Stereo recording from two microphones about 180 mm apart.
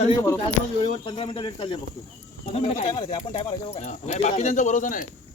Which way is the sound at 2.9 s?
25° left (ahead or behind).